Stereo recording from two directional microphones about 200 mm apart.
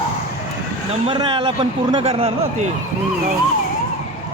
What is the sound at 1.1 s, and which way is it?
A man's voice, 25° right (ahead or behind).